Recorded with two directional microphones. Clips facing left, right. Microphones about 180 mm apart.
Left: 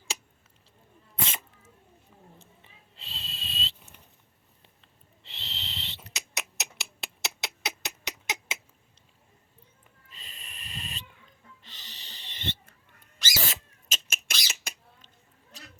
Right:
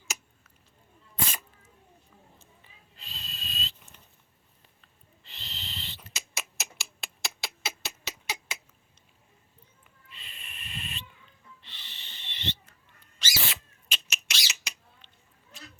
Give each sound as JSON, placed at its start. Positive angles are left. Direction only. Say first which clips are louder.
{"t": 1.2, "sound": "dog", "louder": "even", "side_deg": 25}
{"t": 2.4, "sound": "a sound", "louder": "left 2 dB", "side_deg": 25}
{"t": 5.4, "sound": "owl", "louder": "left 1 dB", "side_deg": 25}
{"t": 6.1, "sound": "beatboxing", "louder": "left 2 dB", "side_deg": 20}
{"t": 7.2, "sound": "rodents", "louder": "left 1 dB", "side_deg": 20}
{"t": 10.1, "sound": "owl", "louder": "even", "side_deg": 40}
{"t": 13.5, "sound": "a sound", "louder": "left 1 dB", "side_deg": 45}
{"t": 15.5, "sound": "cat", "louder": "right 1 dB", "side_deg": 35}